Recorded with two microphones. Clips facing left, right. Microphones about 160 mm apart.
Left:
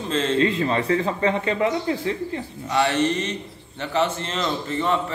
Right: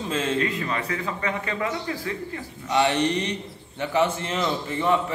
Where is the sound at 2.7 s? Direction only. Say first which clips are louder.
Left 1 dB; 15° right (ahead or behind).